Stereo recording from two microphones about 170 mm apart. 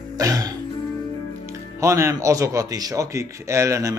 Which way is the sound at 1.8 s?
15° right (ahead or behind).